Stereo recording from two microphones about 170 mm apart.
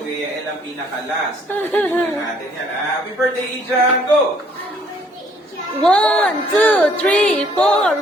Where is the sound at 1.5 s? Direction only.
10° left (ahead or behind).